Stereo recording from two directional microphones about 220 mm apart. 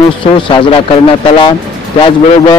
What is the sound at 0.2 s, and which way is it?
Speech, 25° left (ahead or behind).